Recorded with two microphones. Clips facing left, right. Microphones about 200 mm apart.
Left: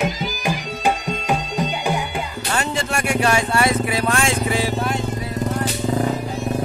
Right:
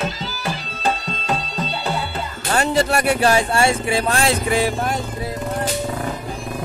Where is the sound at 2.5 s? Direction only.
35° right (ahead or behind).